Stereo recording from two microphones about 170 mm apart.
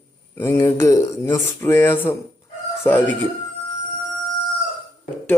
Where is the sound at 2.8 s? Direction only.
10° left (ahead or behind).